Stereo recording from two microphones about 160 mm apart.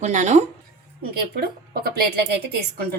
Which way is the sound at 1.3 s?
70° right (ahead or behind).